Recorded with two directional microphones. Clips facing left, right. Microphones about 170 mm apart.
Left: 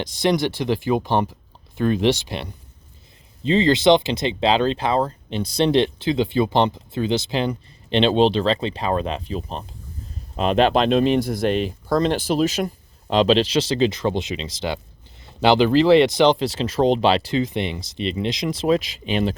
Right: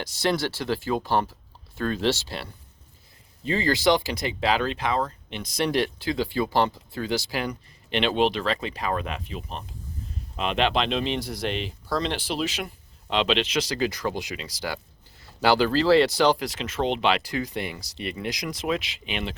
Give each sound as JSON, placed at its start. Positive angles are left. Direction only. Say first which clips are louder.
{"t": 0.0, "sound": "speech", "louder": "left 5 dB", "side_deg": 20}